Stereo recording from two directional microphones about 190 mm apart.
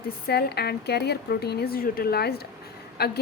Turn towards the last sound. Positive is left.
turn(degrees=55)  # may be behind; listen again after turning